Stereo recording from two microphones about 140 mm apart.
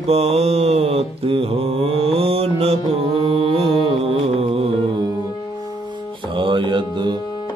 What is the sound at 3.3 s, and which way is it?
Music, 40° right (ahead or behind).